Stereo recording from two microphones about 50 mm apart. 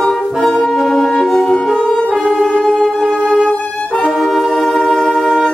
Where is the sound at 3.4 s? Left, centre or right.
Centre.